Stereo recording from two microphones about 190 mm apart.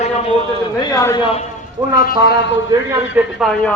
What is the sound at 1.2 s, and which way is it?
Speech, 30° left (ahead or behind).